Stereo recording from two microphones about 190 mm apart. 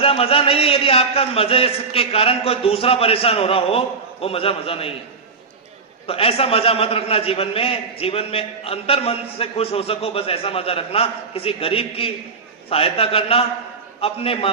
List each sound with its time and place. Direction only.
0.0 s a man's voice: 30° left (ahead or behind)
6.1 s a man's voice: 30° left (ahead or behind)